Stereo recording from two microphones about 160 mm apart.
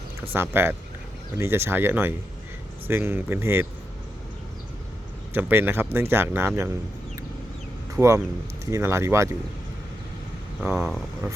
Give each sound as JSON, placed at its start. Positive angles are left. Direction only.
{"t": 0.3, "sound": "speech", "side_deg": -15}
{"t": 5.3, "sound": "speech", "side_deg": -10}
{"t": 8.0, "sound": "speech", "side_deg": -20}
{"t": 10.6, "sound": "speech", "side_deg": -5}